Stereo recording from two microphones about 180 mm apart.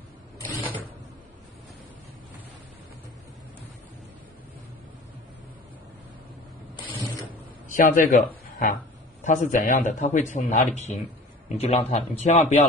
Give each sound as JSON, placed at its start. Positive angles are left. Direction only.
{"t": 7.7, "sound": "a man's voice", "side_deg": 50}